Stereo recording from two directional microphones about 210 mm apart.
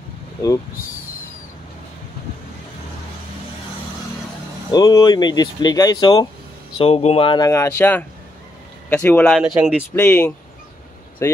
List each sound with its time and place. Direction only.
4.6 s speech: 20° left (ahead or behind)
6.8 s speech: 30° left (ahead or behind); by 9.8 s 5° right (ahead or behind)
9.9 s speech: 10° left (ahead or behind)